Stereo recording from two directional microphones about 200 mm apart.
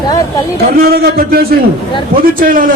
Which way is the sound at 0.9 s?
50° right (ahead or behind).